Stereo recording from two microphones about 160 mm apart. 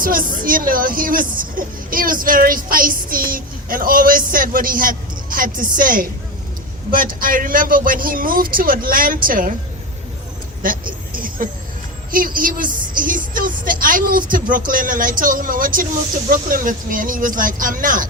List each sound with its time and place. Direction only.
0.0 s a woman's voice: 60° right (ahead or behind)
10.6 s a sound: 60° right (ahead or behind)
12.1 s a woman's voice: 60° right (ahead or behind)